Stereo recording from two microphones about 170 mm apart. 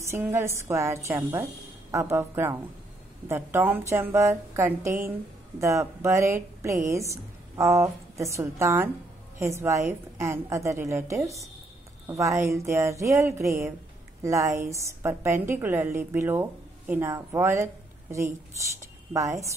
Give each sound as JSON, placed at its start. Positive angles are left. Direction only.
{"t": 0.0, "sound": "a woman's voice", "side_deg": -15}
{"t": 18.8, "sound": "speech", "side_deg": -20}